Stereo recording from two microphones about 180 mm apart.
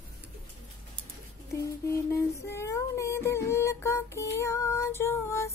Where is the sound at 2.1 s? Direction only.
15° left (ahead or behind).